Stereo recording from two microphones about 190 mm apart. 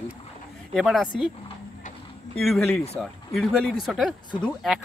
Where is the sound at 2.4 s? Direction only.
Centre (ahead or behind).